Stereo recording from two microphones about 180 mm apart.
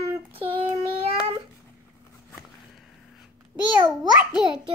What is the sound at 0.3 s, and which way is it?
Child singing, 30° right (ahead or behind).